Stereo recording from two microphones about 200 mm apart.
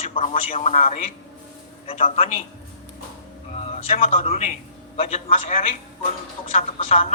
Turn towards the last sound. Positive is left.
turn(degrees=35)  # may be behind; listen again after turning